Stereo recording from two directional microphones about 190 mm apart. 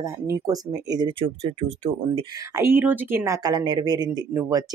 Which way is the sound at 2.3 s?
15° right (ahead or behind).